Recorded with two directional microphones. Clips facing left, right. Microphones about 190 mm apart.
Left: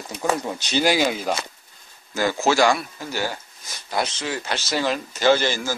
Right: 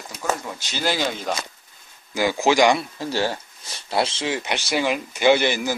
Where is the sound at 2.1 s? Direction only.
15° right (ahead or behind).